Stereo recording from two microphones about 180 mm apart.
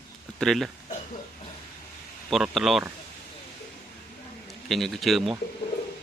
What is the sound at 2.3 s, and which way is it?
Speech, centre (ahead or behind).